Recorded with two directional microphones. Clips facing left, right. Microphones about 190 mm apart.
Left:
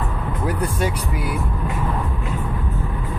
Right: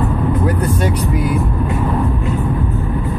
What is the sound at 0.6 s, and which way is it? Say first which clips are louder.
Speech: right 5 dB; 10° left (ahead or behind).